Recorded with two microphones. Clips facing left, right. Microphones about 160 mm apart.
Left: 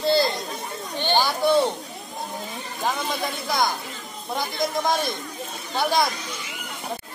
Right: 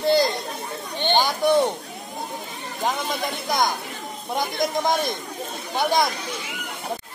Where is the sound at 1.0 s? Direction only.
20° right (ahead or behind).